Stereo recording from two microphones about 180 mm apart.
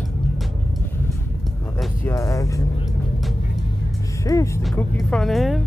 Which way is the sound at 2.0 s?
20° left (ahead or behind).